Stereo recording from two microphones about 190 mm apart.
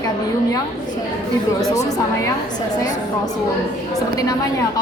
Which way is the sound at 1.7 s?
20° left (ahead or behind).